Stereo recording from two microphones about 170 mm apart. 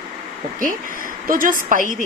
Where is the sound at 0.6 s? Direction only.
55° right (ahead or behind).